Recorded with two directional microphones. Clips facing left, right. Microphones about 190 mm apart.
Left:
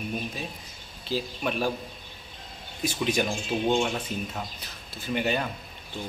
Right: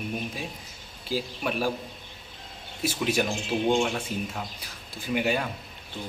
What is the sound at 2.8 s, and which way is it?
Speech, 5° right (ahead or behind).